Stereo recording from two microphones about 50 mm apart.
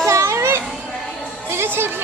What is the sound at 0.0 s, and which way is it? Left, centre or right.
Children playing, right.